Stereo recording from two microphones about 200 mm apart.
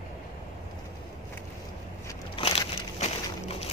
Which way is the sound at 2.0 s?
25° left (ahead or behind).